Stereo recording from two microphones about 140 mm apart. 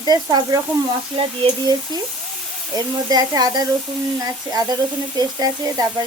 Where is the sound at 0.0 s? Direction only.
30° right (ahead or behind).